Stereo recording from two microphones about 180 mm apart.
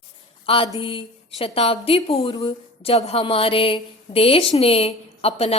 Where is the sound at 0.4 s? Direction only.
30° left (ahead or behind).